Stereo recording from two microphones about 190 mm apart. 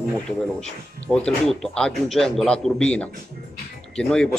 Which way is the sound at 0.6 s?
5° left (ahead or behind).